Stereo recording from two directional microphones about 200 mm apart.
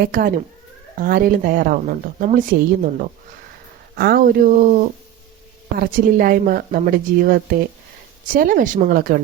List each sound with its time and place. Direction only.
0.0 s a woman's voice: 45° right (ahead or behind)
3.9 s a woman's voice: 50° right (ahead or behind)